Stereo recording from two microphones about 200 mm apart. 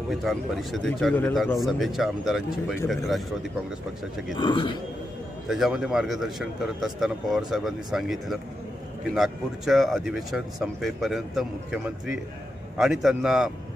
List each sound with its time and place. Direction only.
0.1 s speech: centre (ahead or behind)
4.4 s speech: 25° left (ahead or behind)
5.5 s speech: centre (ahead or behind)